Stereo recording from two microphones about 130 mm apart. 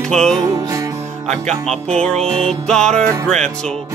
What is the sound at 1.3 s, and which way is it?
Speech, 5° left (ahead or behind).